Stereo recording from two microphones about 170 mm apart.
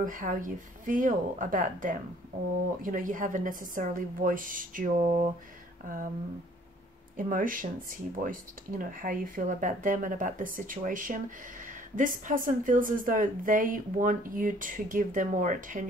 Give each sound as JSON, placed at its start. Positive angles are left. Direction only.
{"t": 0.0, "sound": "speech", "side_deg": -50}
{"t": 7.2, "sound": "speech", "side_deg": -55}